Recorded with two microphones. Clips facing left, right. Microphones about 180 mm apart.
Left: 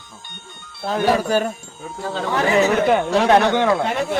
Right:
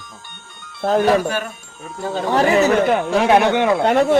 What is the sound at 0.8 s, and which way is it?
Speech, 45° right (ahead or behind).